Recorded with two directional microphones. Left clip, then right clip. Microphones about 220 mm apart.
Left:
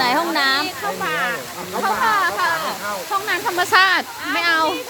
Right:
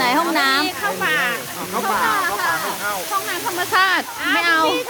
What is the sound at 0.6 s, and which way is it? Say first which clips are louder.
Speech: right 3 dB; 25° right (ahead or behind).